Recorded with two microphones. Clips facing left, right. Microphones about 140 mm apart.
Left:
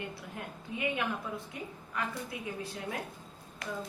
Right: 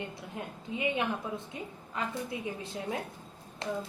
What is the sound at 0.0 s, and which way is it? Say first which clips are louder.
A woman's voice: right 2 dB; 20° right (ahead or behind).